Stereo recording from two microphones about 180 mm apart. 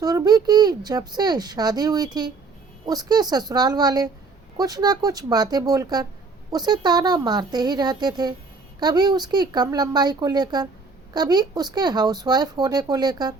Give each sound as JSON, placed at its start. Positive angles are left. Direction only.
{"t": 0.0, "sound": "speech", "side_deg": -20}